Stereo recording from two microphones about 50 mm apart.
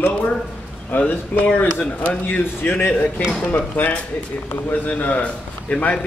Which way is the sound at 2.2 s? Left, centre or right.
Left.